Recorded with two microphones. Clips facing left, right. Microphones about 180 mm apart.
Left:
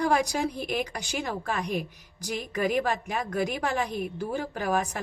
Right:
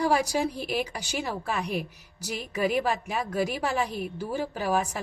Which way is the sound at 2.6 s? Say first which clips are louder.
Right 1 dB; 45° left (ahead or behind).